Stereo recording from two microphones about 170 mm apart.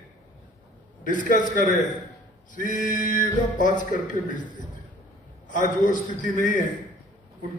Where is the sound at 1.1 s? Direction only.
50° left (ahead or behind).